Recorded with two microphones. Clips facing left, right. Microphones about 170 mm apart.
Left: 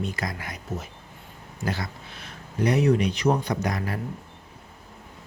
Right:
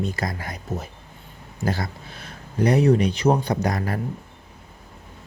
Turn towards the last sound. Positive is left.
turn(degrees=-35)  # may be behind; listen again after turning